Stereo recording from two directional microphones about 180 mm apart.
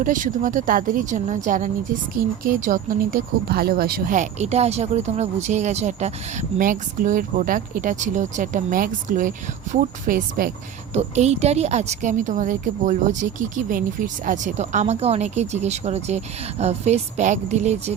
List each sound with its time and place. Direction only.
0.0 s speech: 45° right (ahead or behind)
10.9 s a woman's voice: 40° right (ahead or behind)